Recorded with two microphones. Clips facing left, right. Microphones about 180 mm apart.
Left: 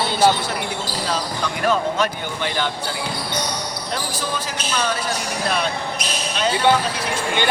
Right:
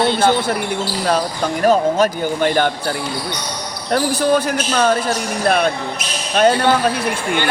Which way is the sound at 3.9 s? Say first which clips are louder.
Right 13 dB; 60° right (ahead or behind).